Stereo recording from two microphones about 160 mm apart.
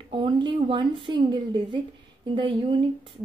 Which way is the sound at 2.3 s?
30° right (ahead or behind).